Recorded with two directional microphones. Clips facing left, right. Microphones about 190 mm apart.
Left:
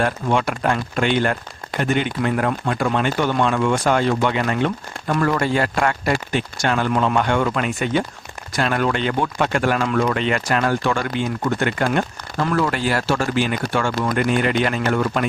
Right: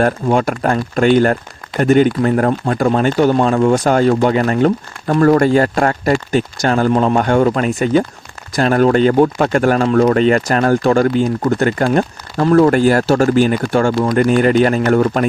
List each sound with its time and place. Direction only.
0.0 s speech: 40° right (ahead or behind)